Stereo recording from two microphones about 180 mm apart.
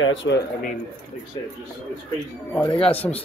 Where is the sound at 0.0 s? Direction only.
90° left.